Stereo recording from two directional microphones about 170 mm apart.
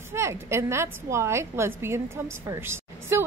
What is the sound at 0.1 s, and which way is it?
A woman's voice, 15° right (ahead or behind).